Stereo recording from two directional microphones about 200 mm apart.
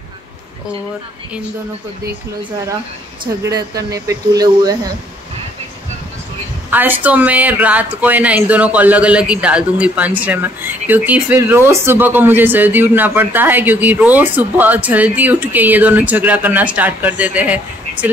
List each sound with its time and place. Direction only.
3.4 s speech: 15° right (ahead or behind)
6.7 s speech: 10° right (ahead or behind)